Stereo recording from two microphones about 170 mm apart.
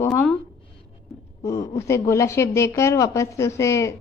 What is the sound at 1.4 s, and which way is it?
A woman's voice, 20° left (ahead or behind).